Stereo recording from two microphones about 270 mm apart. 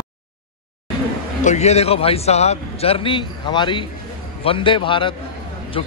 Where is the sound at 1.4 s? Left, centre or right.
Left.